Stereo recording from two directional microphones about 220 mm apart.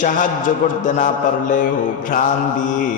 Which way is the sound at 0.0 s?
35° left (ahead or behind).